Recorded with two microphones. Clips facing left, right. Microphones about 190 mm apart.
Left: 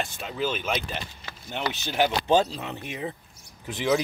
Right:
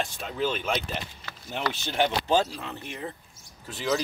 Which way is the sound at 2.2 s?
20° left (ahead or behind).